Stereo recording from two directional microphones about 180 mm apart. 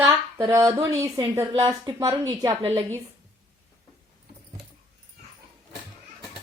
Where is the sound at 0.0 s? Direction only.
15° right (ahead or behind).